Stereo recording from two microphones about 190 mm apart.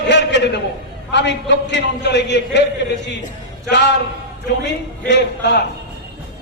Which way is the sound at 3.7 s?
65° left (ahead or behind).